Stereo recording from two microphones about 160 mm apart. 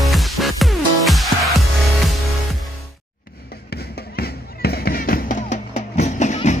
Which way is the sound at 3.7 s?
80° left.